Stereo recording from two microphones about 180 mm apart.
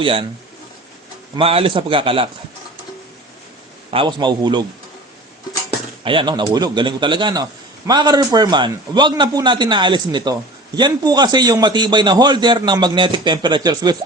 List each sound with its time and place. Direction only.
0.0 s a man's voice: 30° right (ahead or behind)
1.4 s a man's voice: 30° right (ahead or behind)
3.9 s a man's voice: 25° right (ahead or behind)
6.1 s a man's voice: 25° right (ahead or behind)